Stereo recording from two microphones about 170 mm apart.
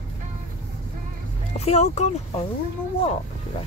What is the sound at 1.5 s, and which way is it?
Speech, 40° left (ahead or behind).